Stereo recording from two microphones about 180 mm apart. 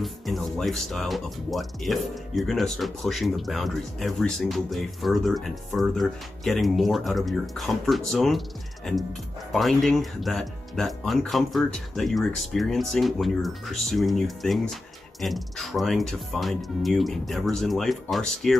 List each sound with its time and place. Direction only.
0.0 s speech: centre (ahead or behind)